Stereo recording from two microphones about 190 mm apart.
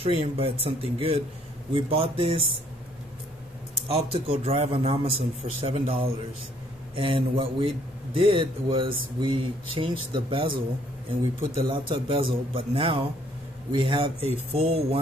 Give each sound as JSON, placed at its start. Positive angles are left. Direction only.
{"t": 0.0, "sound": "a man's voice", "side_deg": -30}
{"t": 3.9, "sound": "a man's voice", "side_deg": -30}
{"t": 11.6, "sound": "a man's voice", "side_deg": -25}